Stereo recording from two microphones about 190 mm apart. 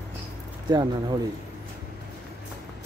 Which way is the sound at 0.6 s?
20° right (ahead or behind).